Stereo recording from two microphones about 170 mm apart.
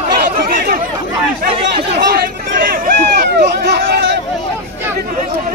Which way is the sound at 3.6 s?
75° right (ahead or behind).